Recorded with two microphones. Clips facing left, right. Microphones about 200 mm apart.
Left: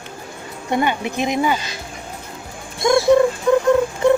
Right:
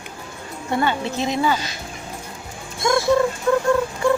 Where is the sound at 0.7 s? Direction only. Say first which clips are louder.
Left 2 dB; 15° left (ahead or behind).